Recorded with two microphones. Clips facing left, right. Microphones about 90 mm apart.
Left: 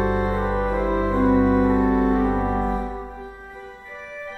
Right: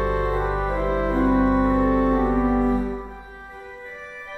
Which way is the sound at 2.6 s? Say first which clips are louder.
Right 3 dB; 30° left (ahead or behind).